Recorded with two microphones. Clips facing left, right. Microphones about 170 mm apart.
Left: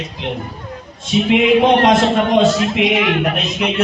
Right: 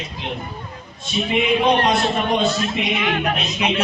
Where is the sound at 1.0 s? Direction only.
90° left.